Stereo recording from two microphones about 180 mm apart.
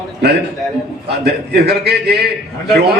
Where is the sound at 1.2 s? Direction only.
65° right (ahead or behind).